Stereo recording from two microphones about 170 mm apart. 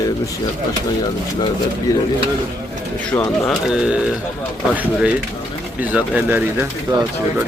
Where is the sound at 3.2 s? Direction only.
Centre (ahead or behind).